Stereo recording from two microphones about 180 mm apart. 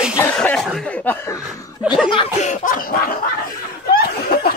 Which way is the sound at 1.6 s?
20° left (ahead or behind).